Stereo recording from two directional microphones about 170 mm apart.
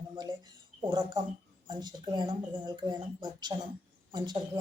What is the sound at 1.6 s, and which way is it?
Speech, 25° right (ahead or behind).